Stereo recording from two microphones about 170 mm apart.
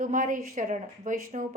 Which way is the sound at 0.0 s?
50° right (ahead or behind).